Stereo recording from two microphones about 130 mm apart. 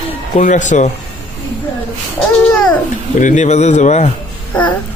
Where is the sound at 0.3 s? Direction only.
70° left (ahead or behind).